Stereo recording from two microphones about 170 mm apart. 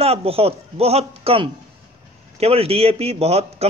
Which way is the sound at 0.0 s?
35° right (ahead or behind).